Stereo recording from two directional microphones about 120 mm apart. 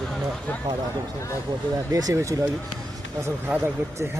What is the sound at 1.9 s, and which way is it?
Speech, 30° right (ahead or behind).